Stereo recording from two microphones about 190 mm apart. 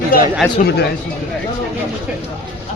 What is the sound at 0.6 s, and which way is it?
Speech, 40° left (ahead or behind).